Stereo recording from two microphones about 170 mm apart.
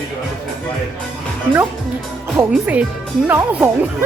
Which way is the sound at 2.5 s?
10° right (ahead or behind).